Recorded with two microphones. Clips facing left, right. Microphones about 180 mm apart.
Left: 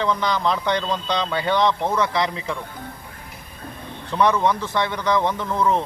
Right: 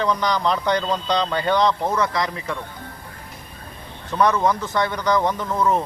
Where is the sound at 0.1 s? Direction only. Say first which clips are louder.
Right 1 dB; 15° right (ahead or behind).